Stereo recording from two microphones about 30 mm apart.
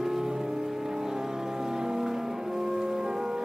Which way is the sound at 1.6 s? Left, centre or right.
Right.